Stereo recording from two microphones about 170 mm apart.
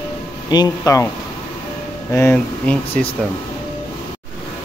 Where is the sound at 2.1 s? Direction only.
15° left (ahead or behind).